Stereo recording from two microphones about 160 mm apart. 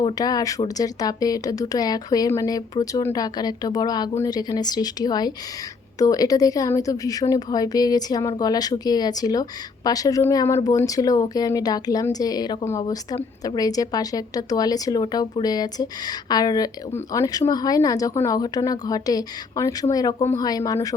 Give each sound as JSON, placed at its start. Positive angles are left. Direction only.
{"t": 0.0, "sound": "a woman's voice", "side_deg": 25}